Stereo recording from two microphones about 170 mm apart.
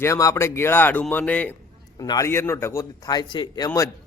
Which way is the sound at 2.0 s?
20° left (ahead or behind).